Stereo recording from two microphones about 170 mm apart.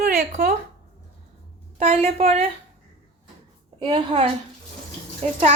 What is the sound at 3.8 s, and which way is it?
Speech, 30° right (ahead or behind).